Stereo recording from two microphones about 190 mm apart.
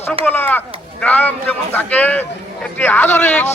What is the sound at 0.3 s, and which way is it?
A man's voice, 10° left (ahead or behind).